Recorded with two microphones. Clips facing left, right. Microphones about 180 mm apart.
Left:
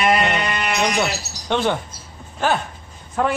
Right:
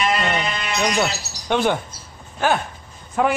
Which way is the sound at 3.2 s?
5° right (ahead or behind).